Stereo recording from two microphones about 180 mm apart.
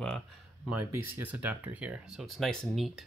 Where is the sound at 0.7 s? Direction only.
10° right (ahead or behind).